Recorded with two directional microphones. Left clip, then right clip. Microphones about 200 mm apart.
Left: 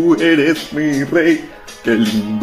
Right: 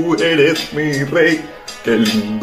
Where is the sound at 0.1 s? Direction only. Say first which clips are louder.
Right 3 dB; 30° left (ahead or behind).